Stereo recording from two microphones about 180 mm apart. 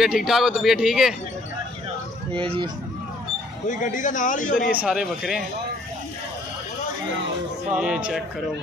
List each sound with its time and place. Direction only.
0.0 s speech: centre (ahead or behind)
2.3 s speech: 30° right (ahead or behind)
3.6 s a man's voice: 45° left (ahead or behind)
4.8 s speech: 5° right (ahead or behind)
7.7 s speech: 5° right (ahead or behind)